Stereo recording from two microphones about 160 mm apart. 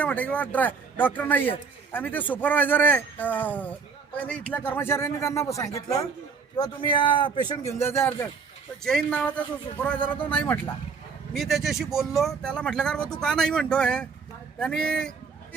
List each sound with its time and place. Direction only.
0.0 s a man's voice: 10° left (ahead or behind)
8.8 s speech: 5° left (ahead or behind)
10.2 s a man's voice: 10° left (ahead or behind)